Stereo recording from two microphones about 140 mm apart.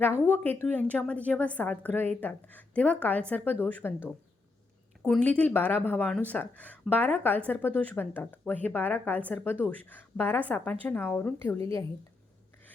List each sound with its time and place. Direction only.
0.3 s speech: 15° left (ahead or behind)
5.0 s speech: 10° left (ahead or behind)